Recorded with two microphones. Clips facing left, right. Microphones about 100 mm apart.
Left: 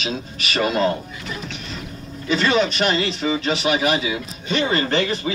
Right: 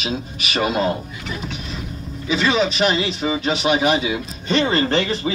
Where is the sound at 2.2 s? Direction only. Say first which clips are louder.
Even; 5° right (ahead or behind).